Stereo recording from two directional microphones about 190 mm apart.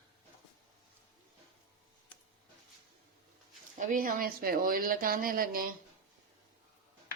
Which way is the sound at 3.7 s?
45° right (ahead or behind).